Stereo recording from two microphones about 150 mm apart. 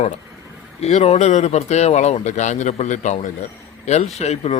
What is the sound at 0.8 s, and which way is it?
A man's voice, 45° left (ahead or behind).